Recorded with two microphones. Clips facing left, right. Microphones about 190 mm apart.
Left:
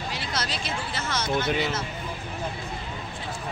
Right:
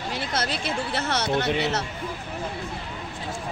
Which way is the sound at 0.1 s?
55° right (ahead or behind).